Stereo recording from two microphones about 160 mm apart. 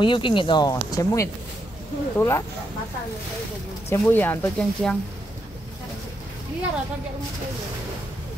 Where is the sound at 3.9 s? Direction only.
10° left (ahead or behind).